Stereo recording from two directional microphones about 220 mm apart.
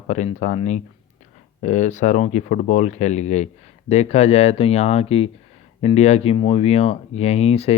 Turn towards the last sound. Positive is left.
turn(degrees=30)  # may be behind; listen again after turning